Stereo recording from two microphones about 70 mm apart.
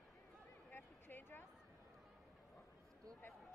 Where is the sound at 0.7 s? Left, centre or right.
Left.